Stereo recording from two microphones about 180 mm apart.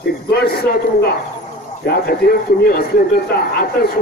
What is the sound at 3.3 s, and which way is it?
Speech, 60° left (ahead or behind).